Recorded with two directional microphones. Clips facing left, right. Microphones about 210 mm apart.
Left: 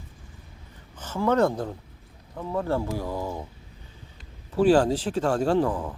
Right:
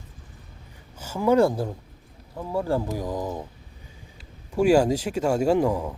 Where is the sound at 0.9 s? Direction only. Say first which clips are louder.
Right 3 dB; 10° right (ahead or behind).